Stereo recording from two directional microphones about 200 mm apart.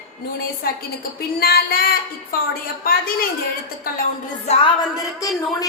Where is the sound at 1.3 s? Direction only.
50° left (ahead or behind).